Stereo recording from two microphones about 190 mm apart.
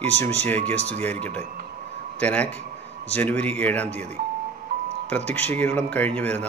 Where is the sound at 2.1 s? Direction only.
5° left (ahead or behind).